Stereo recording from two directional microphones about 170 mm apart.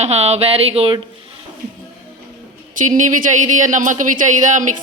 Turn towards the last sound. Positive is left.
turn(degrees=-50)  # may be behind; listen again after turning